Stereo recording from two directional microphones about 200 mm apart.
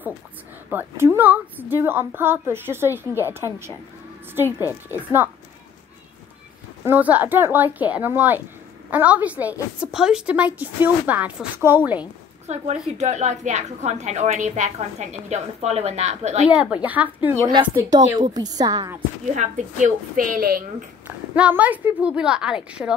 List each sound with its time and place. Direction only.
0.7 s a woman's voice: 10° right (ahead or behind)
4.5 s a woman's voice: 15° left (ahead or behind)
4.9 s a woman's voice: 10° right (ahead or behind)
6.8 s a woman's voice: 10° right (ahead or behind)
12.9 s a woman's voice: 35° right (ahead or behind)
16.4 s a woman's voice: 5° right (ahead or behind)
19.3 s a woman's voice: 40° right (ahead or behind)
21.4 s a woman's voice: 5° right (ahead or behind)